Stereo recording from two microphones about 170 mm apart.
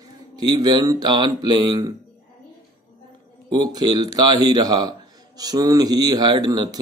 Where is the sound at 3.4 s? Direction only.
25° right (ahead or behind).